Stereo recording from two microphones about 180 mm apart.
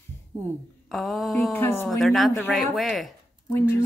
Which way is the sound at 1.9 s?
Centre (ahead or behind).